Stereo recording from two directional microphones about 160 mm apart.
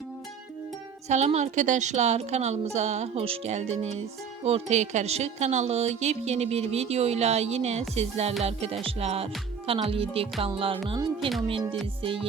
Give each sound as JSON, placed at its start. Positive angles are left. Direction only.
{"t": 1.0, "sound": "a woman's voice", "side_deg": -45}